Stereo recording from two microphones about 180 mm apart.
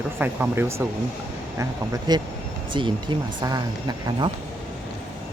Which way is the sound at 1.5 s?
20° right (ahead or behind).